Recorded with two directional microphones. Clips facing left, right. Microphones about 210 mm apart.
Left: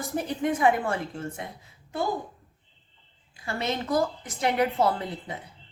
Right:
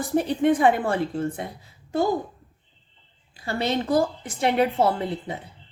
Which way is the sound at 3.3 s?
35° right (ahead or behind).